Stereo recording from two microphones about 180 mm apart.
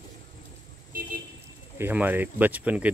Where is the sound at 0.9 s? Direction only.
50° right (ahead or behind).